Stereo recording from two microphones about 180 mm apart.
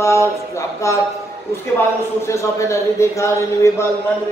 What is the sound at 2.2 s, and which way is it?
A man's voice, 15° left (ahead or behind).